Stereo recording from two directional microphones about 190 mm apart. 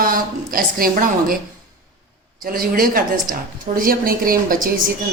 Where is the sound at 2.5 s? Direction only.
50° right (ahead or behind).